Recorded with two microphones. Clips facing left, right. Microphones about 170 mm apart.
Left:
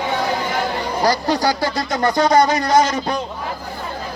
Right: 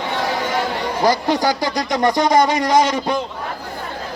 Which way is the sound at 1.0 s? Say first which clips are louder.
Right 1 dB; 20° right (ahead or behind).